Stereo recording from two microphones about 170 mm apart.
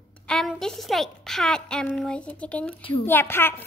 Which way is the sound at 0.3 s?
Centre (ahead or behind).